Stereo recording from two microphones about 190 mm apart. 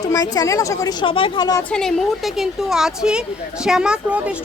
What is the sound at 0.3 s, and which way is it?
A woman's voice, 15° left (ahead or behind).